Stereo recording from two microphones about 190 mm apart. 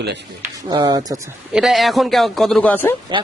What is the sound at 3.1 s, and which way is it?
Speech, 25° right (ahead or behind).